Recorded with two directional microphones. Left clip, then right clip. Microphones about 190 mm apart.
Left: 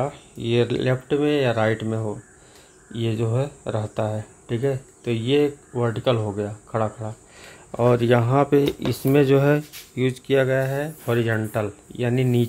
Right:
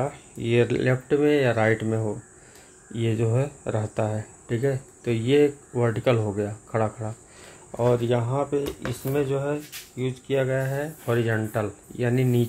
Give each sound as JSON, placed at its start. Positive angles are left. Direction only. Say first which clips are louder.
{"t": 0.0, "sound": "speech", "louder": "left 2 dB", "side_deg": 10}
{"t": 7.7, "sound": "speech", "louder": "left 4 dB", "side_deg": 30}
{"t": 9.9, "sound": "speech", "louder": "left 5 dB", "side_deg": 35}